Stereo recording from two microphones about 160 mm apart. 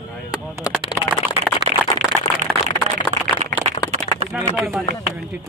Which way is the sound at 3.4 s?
45° right (ahead or behind).